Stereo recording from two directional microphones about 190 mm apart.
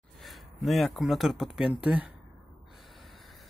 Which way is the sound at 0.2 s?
Centre (ahead or behind).